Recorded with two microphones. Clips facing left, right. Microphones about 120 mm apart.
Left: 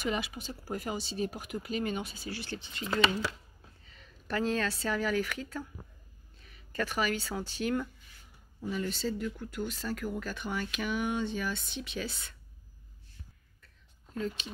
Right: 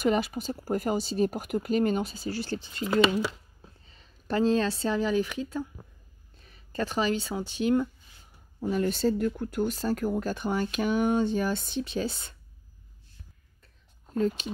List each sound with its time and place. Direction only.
0.0 s speech: 45° right (ahead or behind); by 5.7 s 20° right (ahead or behind)
6.4 s speech: 30° right (ahead or behind)
8.5 s speech: 50° right (ahead or behind); by 12.4 s 30° right (ahead or behind)
14.1 s speech: 40° right (ahead or behind)